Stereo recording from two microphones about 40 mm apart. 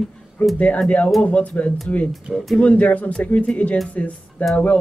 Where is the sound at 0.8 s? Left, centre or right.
Left.